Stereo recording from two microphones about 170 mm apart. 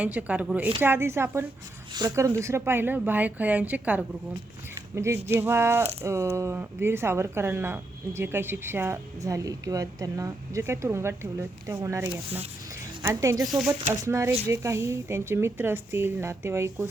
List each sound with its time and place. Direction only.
0.0 s speech: 10° right (ahead or behind)
13.4 s speech: centre (ahead or behind)
14.0 s speech: 15° right (ahead or behind)